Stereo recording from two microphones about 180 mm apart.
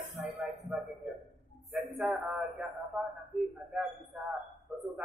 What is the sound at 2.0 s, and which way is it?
Speech, centre (ahead or behind).